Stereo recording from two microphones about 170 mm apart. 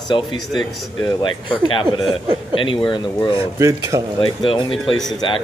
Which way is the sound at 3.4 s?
15° right (ahead or behind).